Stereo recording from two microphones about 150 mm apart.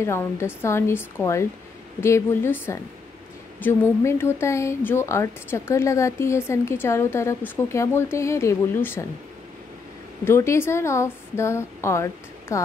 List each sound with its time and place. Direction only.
0.0 s a woman's voice: 20° left (ahead or behind)
10.2 s a woman's voice: 20° left (ahead or behind)